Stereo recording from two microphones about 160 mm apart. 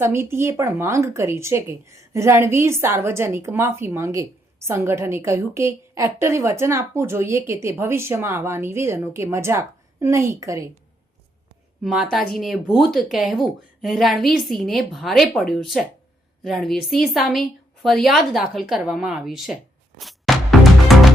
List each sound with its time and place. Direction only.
0.0 s a woman's voice: 15° right (ahead or behind)
11.8 s speech: centre (ahead or behind)
20.0 s music: centre (ahead or behind)